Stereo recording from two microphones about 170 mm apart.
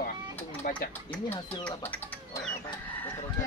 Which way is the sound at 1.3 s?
10° left (ahead or behind).